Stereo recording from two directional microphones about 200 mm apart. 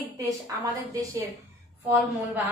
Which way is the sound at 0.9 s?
15° right (ahead or behind).